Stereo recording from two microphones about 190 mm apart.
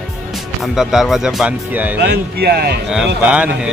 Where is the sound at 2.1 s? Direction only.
55° right (ahead or behind).